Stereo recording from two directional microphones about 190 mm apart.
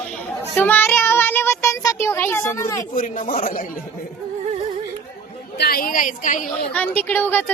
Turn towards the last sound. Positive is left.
turn(degrees=10)  # may be behind; listen again after turning